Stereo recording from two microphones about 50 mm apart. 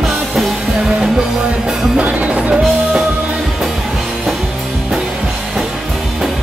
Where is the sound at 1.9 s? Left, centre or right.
Right.